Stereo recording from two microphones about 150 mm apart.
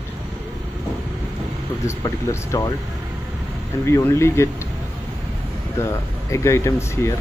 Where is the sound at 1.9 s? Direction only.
20° left (ahead or behind).